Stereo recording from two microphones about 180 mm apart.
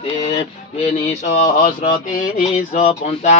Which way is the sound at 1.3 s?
45° left (ahead or behind).